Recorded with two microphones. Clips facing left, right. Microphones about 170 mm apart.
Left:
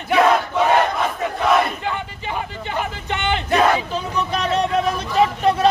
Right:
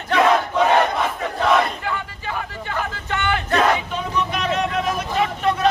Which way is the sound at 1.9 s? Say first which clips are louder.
Left 1 dB; 20° left (ahead or behind).